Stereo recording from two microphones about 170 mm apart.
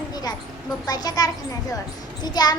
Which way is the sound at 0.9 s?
20° left (ahead or behind).